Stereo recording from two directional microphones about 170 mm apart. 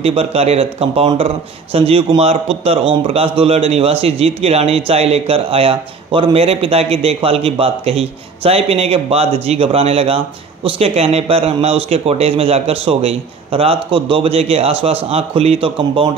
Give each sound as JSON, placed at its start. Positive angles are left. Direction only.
{"t": 0.0, "sound": "speech", "side_deg": -35}